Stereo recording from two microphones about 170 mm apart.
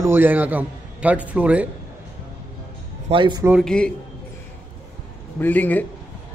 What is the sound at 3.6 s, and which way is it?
Speech, 5° left (ahead or behind).